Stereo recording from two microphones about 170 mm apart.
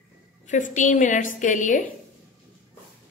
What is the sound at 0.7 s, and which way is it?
Speech, 45° left (ahead or behind).